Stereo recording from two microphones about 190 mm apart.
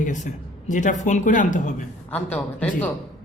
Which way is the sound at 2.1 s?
10° left (ahead or behind).